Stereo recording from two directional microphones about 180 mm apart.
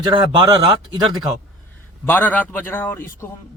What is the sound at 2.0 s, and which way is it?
A man's voice, 10° left (ahead or behind).